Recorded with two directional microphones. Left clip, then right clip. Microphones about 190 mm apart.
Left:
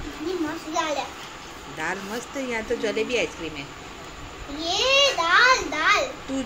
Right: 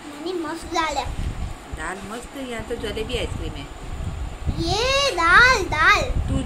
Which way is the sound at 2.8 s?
5° left (ahead or behind).